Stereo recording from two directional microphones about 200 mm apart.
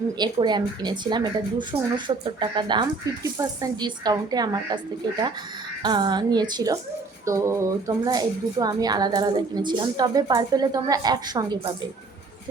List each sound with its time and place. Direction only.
0.2 s speech: 20° right (ahead or behind)
5.8 s speech: 20° right (ahead or behind)